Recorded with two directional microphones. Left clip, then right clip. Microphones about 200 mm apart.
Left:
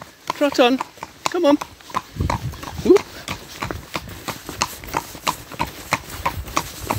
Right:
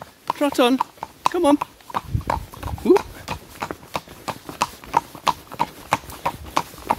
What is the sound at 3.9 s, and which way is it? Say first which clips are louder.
Clip-clop: even; 5° left (ahead or behind).